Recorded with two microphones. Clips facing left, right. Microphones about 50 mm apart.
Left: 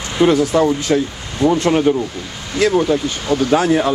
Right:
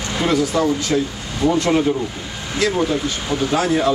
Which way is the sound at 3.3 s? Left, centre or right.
Centre.